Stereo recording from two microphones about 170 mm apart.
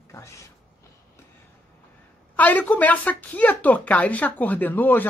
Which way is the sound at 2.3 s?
10° left (ahead or behind).